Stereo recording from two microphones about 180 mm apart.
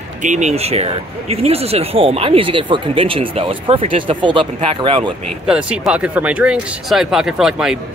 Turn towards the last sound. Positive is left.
turn(degrees=-5)  # may be behind; listen again after turning